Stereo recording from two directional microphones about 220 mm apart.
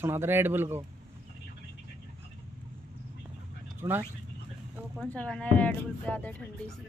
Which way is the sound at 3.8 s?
10° right (ahead or behind).